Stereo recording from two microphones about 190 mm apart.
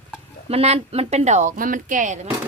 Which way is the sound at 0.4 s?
35° right (ahead or behind).